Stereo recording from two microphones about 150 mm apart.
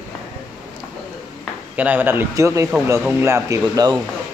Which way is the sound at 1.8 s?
10° right (ahead or behind).